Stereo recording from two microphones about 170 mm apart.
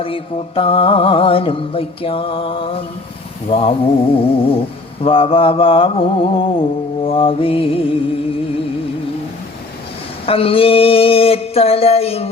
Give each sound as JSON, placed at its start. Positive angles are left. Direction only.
{"t": 0.0, "sound": "mantra", "side_deg": 35}
{"t": 10.2, "sound": "mantra", "side_deg": 35}